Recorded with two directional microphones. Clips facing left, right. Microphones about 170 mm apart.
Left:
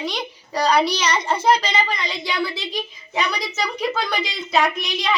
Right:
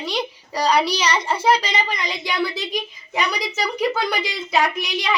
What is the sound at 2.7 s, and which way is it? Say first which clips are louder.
A child's voice: even; 15° right (ahead or behind).